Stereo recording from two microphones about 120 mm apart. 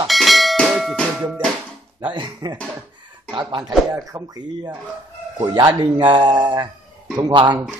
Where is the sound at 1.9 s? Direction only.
40° right (ahead or behind).